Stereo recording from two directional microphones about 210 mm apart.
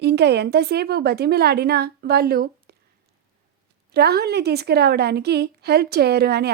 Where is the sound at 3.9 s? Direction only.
50° right (ahead or behind).